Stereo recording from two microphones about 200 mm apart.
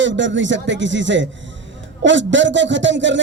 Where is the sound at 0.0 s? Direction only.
65° right (ahead or behind).